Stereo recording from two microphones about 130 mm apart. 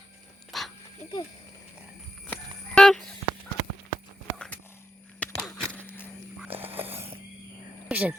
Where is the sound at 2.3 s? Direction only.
5° left (ahead or behind).